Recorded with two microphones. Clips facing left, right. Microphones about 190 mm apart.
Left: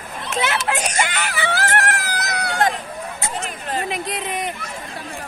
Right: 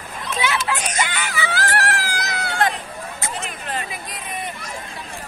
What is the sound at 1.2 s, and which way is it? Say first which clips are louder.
Screaming: left 2 dB; 60° left (ahead or behind).